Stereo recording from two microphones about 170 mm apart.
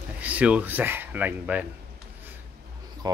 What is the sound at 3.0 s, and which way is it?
Speech, 20° right (ahead or behind).